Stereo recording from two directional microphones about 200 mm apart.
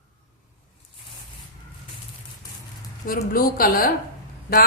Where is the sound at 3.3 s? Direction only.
45° left (ahead or behind).